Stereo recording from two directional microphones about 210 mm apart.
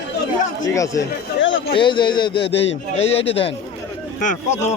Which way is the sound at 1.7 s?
20° left (ahead or behind).